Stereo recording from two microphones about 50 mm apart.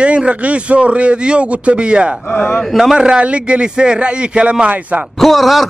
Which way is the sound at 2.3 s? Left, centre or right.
Left.